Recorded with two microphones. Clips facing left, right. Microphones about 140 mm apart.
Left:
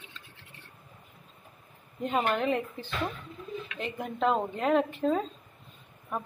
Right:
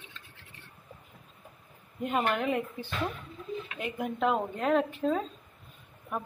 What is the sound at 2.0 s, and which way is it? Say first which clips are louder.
A woman's voice: left 1 dB; 10° right (ahead or behind).